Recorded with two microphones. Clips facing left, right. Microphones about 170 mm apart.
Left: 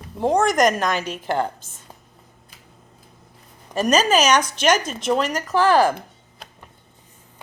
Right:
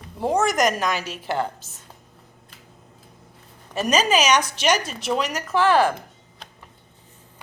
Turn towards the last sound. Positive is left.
turn(degrees=40)  # may be behind; listen again after turning